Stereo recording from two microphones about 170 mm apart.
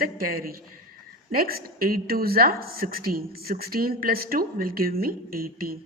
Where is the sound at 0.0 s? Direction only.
60° right (ahead or behind).